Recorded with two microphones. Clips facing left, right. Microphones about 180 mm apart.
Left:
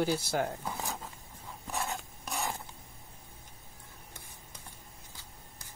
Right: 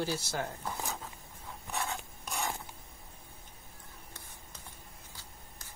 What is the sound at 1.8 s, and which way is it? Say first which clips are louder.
Filing: left 1 dB; centre (ahead or behind).